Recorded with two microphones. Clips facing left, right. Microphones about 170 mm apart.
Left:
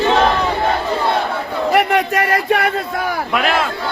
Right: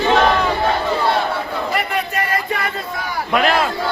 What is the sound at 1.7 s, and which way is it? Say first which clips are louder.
A man's voice: left 8 dB; 90° left.